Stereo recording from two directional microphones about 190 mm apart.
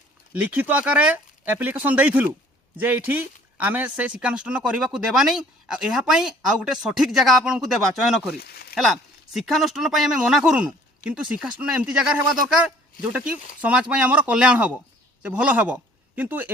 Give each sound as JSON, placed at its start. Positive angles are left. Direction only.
{"t": 0.3, "sound": "speech", "side_deg": -10}
{"t": 8.4, "sound": "a sound", "side_deg": 55}
{"t": 8.7, "sound": "a man's voice", "side_deg": 0}